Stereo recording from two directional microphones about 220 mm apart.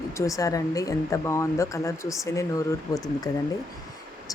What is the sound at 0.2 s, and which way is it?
Speech, 15° left (ahead or behind).